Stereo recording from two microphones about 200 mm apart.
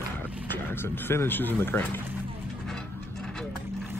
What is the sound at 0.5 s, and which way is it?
Speech, 10° left (ahead or behind).